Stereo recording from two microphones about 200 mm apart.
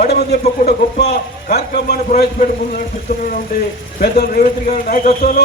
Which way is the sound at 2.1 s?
40° left (ahead or behind).